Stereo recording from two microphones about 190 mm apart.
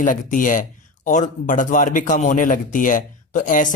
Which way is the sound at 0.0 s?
40° left (ahead or behind).